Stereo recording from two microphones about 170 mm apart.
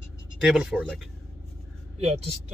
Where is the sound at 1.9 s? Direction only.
40° right (ahead or behind).